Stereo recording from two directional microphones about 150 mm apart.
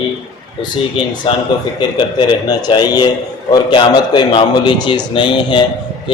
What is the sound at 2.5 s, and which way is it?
A man's voice, 25° left (ahead or behind).